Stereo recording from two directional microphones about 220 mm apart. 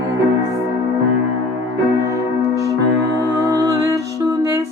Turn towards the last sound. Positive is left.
turn(degrees=-15)  # may be behind; listen again after turning